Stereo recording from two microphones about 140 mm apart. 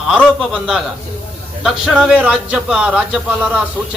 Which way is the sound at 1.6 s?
Centre (ahead or behind).